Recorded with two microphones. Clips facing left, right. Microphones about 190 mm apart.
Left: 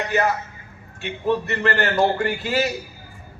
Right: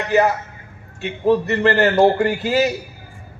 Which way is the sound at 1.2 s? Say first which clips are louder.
Right 6 dB; 30° right (ahead or behind).